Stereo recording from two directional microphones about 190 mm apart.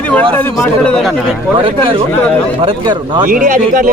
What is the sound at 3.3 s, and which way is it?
Speech, 45° right (ahead or behind).